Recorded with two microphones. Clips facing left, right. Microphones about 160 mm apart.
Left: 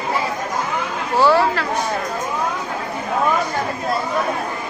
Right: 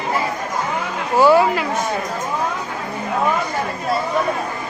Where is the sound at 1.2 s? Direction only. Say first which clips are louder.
Right 2 dB; 15° right (ahead or behind).